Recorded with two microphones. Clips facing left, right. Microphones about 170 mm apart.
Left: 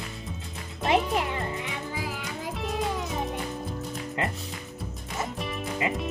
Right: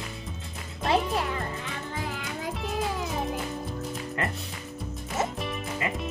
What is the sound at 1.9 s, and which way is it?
Music, 5° left (ahead or behind).